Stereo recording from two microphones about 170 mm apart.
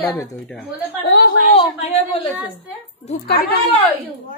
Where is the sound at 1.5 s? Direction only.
35° left (ahead or behind).